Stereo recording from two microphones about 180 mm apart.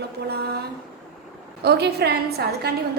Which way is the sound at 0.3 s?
65° right (ahead or behind).